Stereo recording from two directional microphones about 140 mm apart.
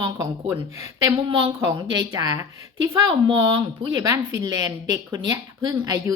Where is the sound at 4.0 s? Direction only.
25° right (ahead or behind).